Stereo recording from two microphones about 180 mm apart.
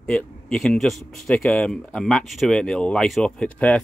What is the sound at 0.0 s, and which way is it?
Speech, 5° left (ahead or behind).